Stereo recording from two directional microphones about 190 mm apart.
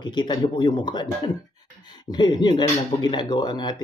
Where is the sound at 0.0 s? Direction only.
25° left (ahead or behind).